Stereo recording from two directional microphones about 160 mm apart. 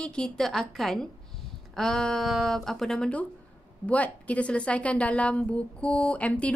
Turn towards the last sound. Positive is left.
turn(degrees=10)  # may be behind; listen again after turning